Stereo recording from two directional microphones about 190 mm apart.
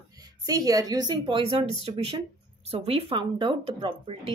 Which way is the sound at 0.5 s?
20° right (ahead or behind).